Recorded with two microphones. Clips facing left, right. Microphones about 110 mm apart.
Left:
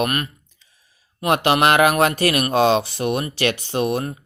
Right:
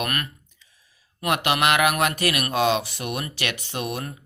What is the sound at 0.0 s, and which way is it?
Speech, 25° left (ahead or behind).